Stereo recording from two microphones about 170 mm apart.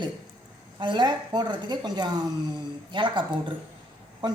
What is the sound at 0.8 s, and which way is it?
A woman's voice, 25° right (ahead or behind).